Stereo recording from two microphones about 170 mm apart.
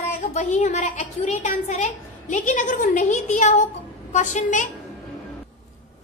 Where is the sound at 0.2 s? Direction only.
40° left (ahead or behind).